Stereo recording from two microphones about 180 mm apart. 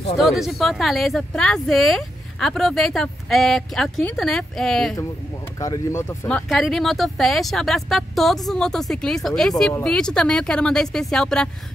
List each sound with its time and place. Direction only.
0.2 s speech: centre (ahead or behind)
5.6 s speech: 20° left (ahead or behind)
6.2 s speech: 5° left (ahead or behind)